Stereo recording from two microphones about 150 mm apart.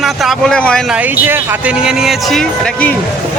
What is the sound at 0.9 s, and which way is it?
Speech, 10° right (ahead or behind).